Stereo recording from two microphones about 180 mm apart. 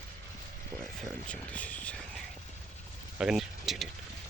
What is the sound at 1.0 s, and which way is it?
Speech, 5° left (ahead or behind).